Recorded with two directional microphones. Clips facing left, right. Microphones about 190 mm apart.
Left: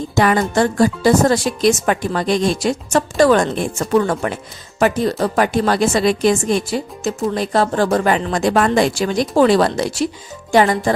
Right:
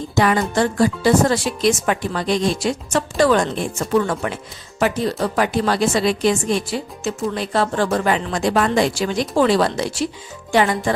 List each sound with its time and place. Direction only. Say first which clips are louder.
0.2 s speech: left 2 dB; 50° left (ahead or behind)
5.4 s speech: left 2 dB; 50° left (ahead or behind)